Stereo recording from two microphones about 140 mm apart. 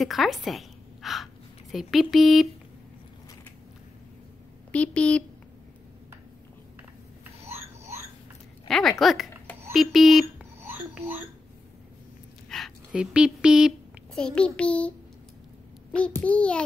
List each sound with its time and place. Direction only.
0.0 s a woman's voice: centre (ahead or behind)
4.7 s child singing: 10° left (ahead or behind)
7.4 s a sound: 15° right (ahead or behind)
8.6 s speech: centre (ahead or behind)
10.6 s whispering: 15° right (ahead or behind)
12.4 s a sound: centre (ahead or behind)
14.2 s child singing: 5° left (ahead or behind)